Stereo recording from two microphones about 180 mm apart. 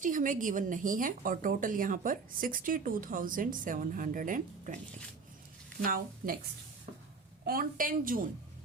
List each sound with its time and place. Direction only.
0.0 s speech: 45° right (ahead or behind)
5.8 s speech: 50° right (ahead or behind)
7.4 s speech: 55° right (ahead or behind)